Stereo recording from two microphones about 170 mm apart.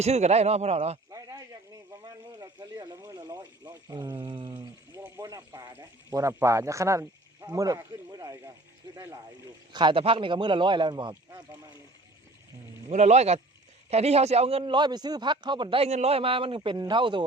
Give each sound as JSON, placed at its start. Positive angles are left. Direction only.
{"t": 0.0, "sound": "a man's voice", "side_deg": -40}
{"t": 3.0, "sound": "speech", "side_deg": -20}
{"t": 5.0, "sound": "speech", "side_deg": -15}
{"t": 9.7, "sound": "speech", "side_deg": -30}
{"t": 12.9, "sound": "a man's voice", "side_deg": -40}